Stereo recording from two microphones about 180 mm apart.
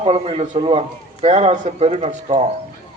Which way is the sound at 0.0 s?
35° right (ahead or behind).